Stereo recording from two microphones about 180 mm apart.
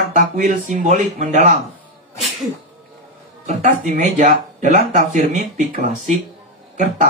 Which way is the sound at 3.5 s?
45° right (ahead or behind).